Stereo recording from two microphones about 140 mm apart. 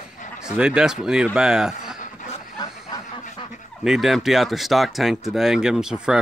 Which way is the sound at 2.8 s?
30° left (ahead or behind).